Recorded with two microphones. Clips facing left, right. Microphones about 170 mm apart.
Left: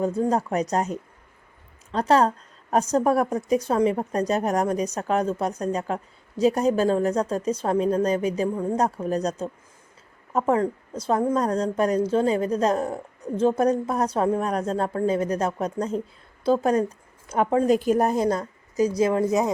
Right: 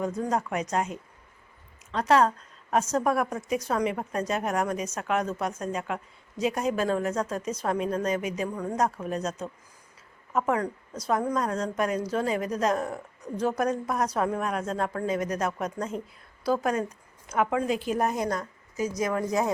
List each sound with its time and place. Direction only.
0.0 s a woman's voice: 30° left (ahead or behind)
17.7 s speech: 45° left (ahead or behind)
18.1 s a woman's voice: 30° left (ahead or behind)